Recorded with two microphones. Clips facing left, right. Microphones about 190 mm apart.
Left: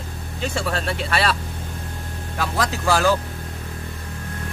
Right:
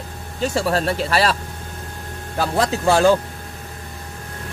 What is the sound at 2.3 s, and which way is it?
Speech, 30° right (ahead or behind).